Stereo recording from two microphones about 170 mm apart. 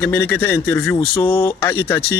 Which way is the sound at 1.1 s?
30° left (ahead or behind).